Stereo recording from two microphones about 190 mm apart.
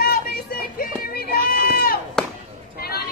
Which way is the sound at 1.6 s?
50° left (ahead or behind).